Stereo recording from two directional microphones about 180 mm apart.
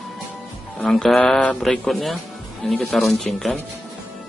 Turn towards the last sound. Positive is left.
turn(degrees=0)  # may be behind; listen again after turning